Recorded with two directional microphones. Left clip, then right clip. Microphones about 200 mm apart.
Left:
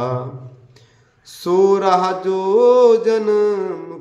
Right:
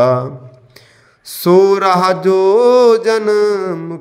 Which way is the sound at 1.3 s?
40° right (ahead or behind).